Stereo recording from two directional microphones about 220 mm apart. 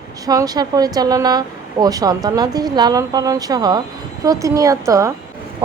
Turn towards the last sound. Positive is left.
turn(degrees=-15)  # may be behind; listen again after turning